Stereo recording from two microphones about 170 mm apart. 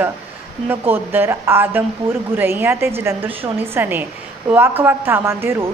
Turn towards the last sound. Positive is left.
turn(degrees=-15)  # may be behind; listen again after turning